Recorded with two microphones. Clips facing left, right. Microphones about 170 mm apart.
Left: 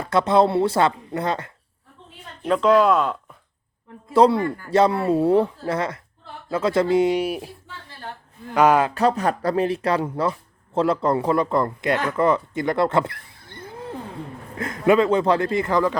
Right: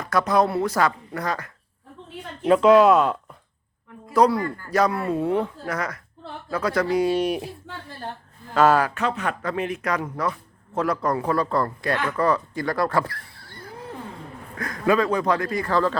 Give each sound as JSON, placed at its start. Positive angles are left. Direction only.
{"t": 0.0, "sound": "speech", "side_deg": 25}
{"t": 2.4, "sound": "speech", "side_deg": -5}
{"t": 4.1, "sound": "speech", "side_deg": 25}
{"t": 7.2, "sound": "speech", "side_deg": 0}
{"t": 8.5, "sound": "speech", "side_deg": 15}
{"t": 9.0, "sound": "speech", "side_deg": 35}